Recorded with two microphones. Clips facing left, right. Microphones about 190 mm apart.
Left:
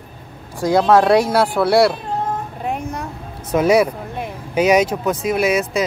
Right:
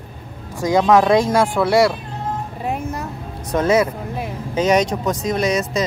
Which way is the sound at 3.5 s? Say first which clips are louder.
Left 2 dB; 10° left (ahead or behind).